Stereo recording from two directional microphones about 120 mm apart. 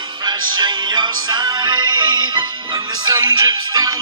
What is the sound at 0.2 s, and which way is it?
Music, 40° right (ahead or behind).